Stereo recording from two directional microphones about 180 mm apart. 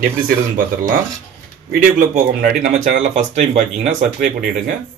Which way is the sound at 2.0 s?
50° right (ahead or behind).